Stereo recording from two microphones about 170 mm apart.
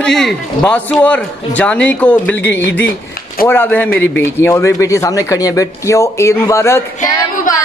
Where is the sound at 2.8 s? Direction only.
60° left (ahead or behind).